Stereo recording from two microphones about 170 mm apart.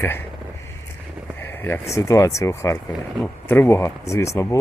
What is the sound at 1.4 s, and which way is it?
Speech, 10° left (ahead or behind).